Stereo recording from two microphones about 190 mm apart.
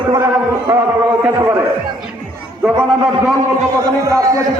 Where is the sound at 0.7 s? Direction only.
10° right (ahead or behind).